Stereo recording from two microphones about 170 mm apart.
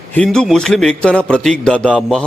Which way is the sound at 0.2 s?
5° left (ahead or behind).